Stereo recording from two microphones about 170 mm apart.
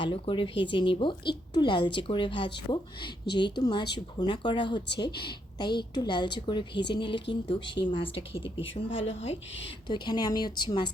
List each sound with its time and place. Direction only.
0.0 s a woman's voice: 30° left (ahead or behind)